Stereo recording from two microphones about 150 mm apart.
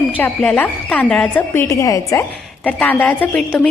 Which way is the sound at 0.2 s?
10° left (ahead or behind).